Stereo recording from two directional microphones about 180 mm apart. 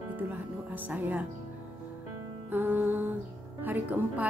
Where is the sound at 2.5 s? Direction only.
10° right (ahead or behind).